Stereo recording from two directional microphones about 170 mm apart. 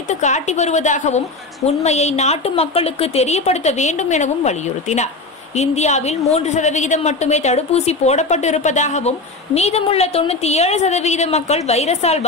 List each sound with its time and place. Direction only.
0.1 s a woman's voice: 45° left (ahead or behind)